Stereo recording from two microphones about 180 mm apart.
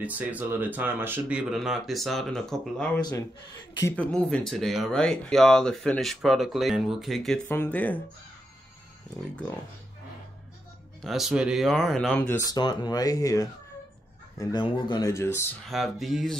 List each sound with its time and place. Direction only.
0.0 s speech: 10° right (ahead or behind)
3.0 s speech: 20° left (ahead or behind)
3.8 s speech: 10° left (ahead or behind)
7.4 s speech: 15° left (ahead or behind)
11.0 s speech: centre (ahead or behind); by 15.4 s 15° left (ahead or behind)
15.7 s speech: centre (ahead or behind)